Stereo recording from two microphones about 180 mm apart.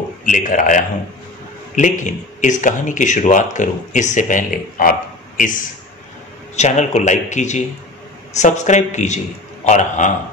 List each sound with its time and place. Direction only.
0.2 s speech: 50° left (ahead or behind)
6.5 s speech: 40° left (ahead or behind)